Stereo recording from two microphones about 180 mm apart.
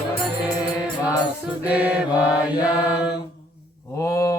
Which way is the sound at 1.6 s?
10° right (ahead or behind).